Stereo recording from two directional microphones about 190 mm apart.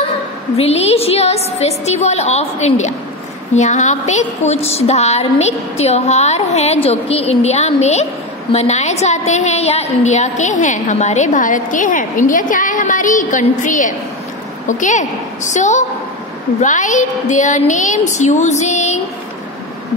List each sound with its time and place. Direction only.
0.6 s a woman's voice: 35° left (ahead or behind)